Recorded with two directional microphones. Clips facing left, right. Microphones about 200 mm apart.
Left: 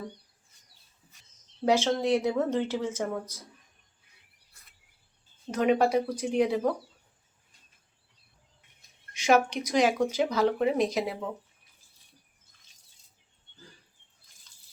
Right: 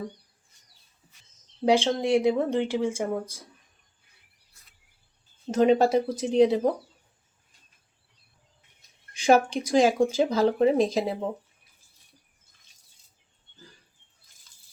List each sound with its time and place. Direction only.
1.6 s speech: 15° right (ahead or behind)
5.5 s speech: 25° right (ahead or behind)
9.1 s speech: 30° right (ahead or behind)